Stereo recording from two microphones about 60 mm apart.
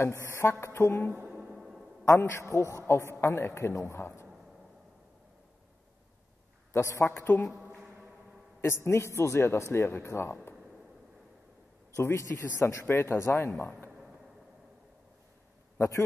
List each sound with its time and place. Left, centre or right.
0.0 s a man's voice: left
1.3 s music: centre
2.0 s a man's voice: left
6.7 s a man's voice: left
7.1 s a woman's voice: left
8.5 s a man's voice: left
11.9 s a man's voice: left